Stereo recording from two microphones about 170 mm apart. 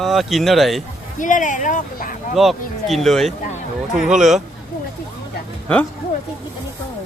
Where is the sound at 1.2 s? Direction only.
50° left (ahead or behind).